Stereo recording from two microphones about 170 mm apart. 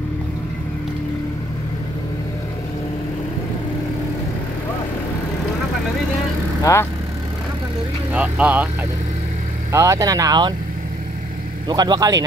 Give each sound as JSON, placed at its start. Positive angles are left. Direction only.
{"t": 6.6, "sound": "speech", "side_deg": 15}
{"t": 8.1, "sound": "vehicle", "side_deg": -10}
{"t": 9.7, "sound": "speech", "side_deg": -20}
{"t": 11.7, "sound": "speech", "side_deg": -25}